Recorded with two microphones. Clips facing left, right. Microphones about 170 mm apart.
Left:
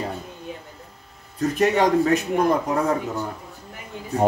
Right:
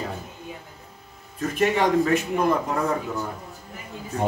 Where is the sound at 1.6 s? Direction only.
40° left (ahead or behind).